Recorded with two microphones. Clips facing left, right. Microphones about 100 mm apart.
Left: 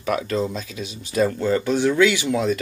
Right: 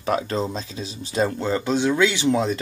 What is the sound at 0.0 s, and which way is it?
Speech, 30° right (ahead or behind).